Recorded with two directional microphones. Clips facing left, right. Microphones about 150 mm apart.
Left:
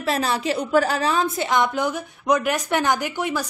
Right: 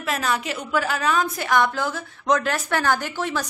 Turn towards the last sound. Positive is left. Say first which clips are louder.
# left 1 dB
turn(degrees=10)  # may be behind; listen again after turning